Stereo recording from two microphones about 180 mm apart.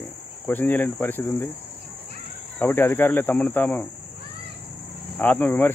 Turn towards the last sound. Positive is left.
turn(degrees=10)  # may be behind; listen again after turning